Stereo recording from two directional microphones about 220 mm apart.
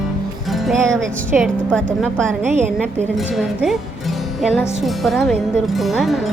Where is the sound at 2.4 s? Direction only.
30° right (ahead or behind).